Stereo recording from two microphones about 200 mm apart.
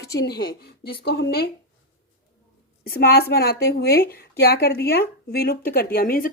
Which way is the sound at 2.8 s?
50° left (ahead or behind).